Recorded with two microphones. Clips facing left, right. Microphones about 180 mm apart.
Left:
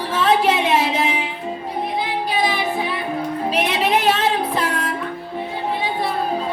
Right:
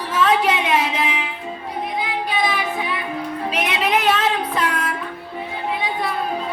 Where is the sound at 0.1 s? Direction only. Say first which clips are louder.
Left 1 dB; 30° left (ahead or behind).